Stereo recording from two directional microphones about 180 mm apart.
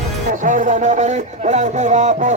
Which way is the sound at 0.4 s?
45° right (ahead or behind).